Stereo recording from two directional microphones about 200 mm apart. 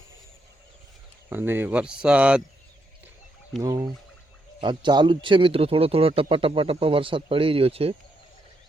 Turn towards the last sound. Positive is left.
turn(degrees=-30)  # may be behind; listen again after turning